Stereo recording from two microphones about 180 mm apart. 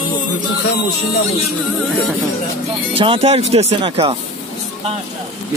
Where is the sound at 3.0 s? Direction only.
30° right (ahead or behind).